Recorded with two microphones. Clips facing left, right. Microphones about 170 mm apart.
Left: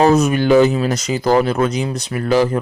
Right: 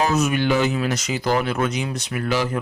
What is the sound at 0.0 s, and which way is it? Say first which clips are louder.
Speech: left 7 dB; 35° left (ahead or behind).